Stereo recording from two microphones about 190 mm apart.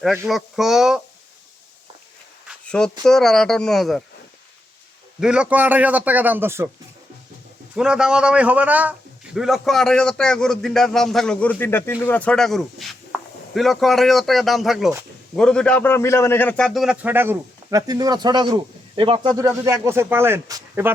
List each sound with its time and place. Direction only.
0.3 s a man's voice: centre (ahead or behind)
2.5 s a sound: 5° left (ahead or behind)
3.0 s a man's voice: centre (ahead or behind)
5.2 s a man's voice: 5° right (ahead or behind)
7.8 s a man's voice: 5° right (ahead or behind)